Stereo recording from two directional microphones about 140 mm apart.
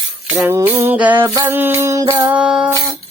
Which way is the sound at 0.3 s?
20° right (ahead or behind).